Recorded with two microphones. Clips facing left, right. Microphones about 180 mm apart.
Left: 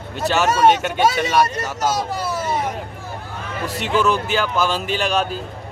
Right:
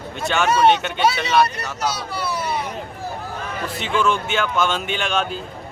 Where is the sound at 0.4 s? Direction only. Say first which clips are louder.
Even; 40° left (ahead or behind).